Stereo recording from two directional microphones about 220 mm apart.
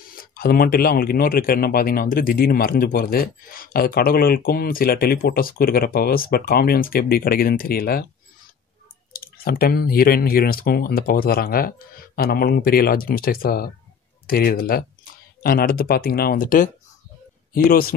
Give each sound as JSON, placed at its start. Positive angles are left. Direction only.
{"t": 0.1, "sound": "speech", "side_deg": 40}
{"t": 9.1, "sound": "speech", "side_deg": 40}